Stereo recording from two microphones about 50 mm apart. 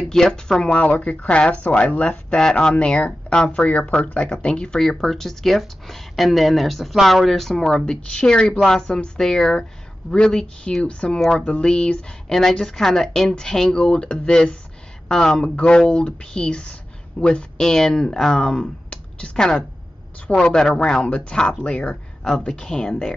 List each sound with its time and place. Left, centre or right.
0.1 s speech: centre
0.8 s speech: left
4.7 s speech: centre
15.4 s a woman's voice: left
20.2 s a woman's voice: left